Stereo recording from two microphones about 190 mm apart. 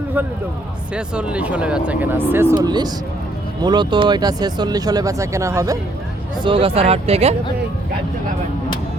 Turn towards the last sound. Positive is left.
turn(degrees=-35)  # may be behind; listen again after turning